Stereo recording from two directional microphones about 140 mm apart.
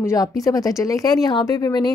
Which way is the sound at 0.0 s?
25° left (ahead or behind).